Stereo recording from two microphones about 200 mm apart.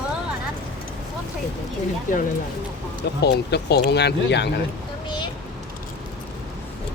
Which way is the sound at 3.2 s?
55° left (ahead or behind).